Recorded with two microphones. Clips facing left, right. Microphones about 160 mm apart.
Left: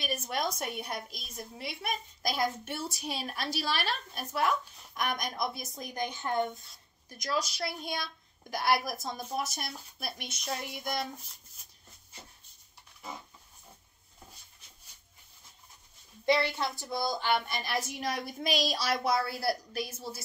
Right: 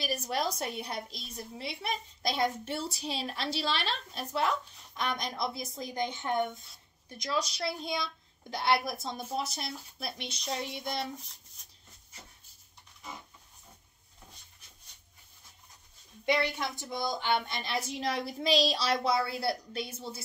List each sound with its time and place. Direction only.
0.0 s a woman's voice: 35° right (ahead or behind)
11.6 s rub: 5° left (ahead or behind)
16.3 s a woman's voice: 15° right (ahead or behind)